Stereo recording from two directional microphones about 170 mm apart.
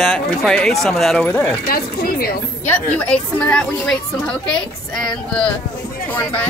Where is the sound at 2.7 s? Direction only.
10° left (ahead or behind).